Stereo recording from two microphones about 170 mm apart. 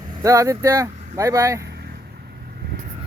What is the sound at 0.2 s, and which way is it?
Speech, 20° right (ahead or behind).